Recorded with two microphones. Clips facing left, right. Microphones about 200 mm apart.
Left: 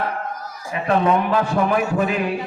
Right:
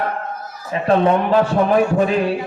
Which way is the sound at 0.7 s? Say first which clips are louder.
Right 3 dB; 30° right (ahead or behind).